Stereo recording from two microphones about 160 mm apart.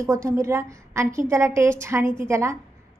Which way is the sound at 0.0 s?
20° right (ahead or behind).